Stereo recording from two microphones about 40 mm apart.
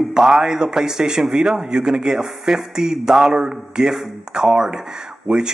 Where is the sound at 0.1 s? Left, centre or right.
Centre.